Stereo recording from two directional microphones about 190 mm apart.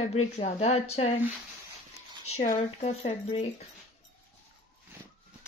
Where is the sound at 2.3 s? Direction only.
35° left (ahead or behind).